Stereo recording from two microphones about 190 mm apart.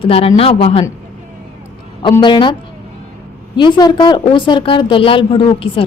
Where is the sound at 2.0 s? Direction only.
25° left (ahead or behind).